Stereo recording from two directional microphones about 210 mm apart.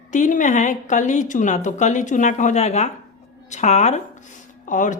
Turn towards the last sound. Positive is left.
turn(degrees=35)  # may be behind; listen again after turning